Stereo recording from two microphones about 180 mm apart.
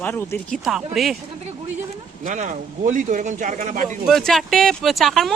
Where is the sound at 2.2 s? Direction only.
45° right (ahead or behind).